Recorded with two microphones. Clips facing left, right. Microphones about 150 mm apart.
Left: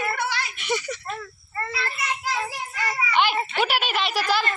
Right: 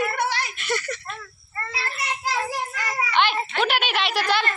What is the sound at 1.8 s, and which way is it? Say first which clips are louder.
Child singing: right 3 dB; 40° right (ahead or behind).